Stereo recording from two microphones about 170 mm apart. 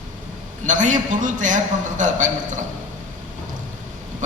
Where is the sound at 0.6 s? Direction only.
50° right (ahead or behind).